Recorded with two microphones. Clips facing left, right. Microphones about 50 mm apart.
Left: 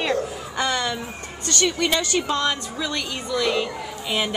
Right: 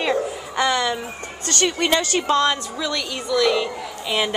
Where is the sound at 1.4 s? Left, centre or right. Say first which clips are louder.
Right 1 dB; right.